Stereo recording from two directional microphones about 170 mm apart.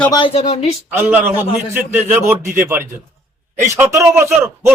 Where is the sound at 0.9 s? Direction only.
10° right (ahead or behind).